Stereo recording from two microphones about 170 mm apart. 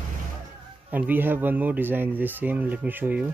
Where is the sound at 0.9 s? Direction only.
10° right (ahead or behind).